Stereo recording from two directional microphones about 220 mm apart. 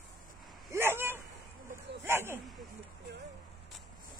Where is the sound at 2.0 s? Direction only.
10° right (ahead or behind).